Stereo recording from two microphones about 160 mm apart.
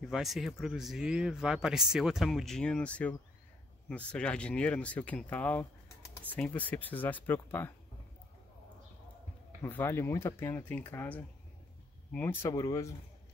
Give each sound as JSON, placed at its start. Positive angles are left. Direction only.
{"t": 0.0, "sound": "speech", "side_deg": 0}
{"t": 9.6, "sound": "speech", "side_deg": 15}